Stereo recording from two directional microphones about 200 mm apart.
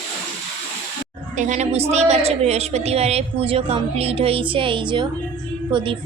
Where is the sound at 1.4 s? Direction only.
35° right (ahead or behind).